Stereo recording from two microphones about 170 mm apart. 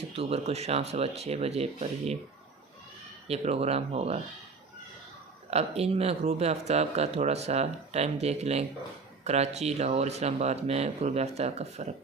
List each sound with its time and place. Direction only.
0.2 s speech: 35° right (ahead or behind)
3.2 s speech: 35° right (ahead or behind)
5.5 s speech: 40° right (ahead or behind)